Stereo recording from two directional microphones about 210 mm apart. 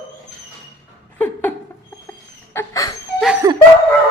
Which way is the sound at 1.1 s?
10° left (ahead or behind).